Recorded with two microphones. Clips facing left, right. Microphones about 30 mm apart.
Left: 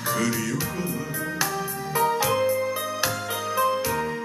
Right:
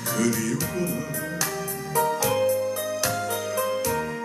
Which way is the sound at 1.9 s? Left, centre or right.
Centre.